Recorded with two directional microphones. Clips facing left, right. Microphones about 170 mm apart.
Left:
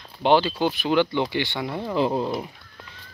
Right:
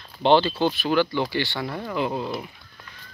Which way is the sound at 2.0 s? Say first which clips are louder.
Left 4 dB; 30° left (ahead or behind).